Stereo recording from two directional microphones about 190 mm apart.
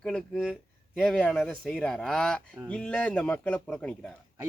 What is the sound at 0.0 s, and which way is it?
Speech, 5° left (ahead or behind).